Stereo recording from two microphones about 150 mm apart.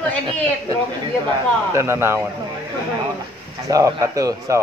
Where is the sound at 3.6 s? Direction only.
20° right (ahead or behind).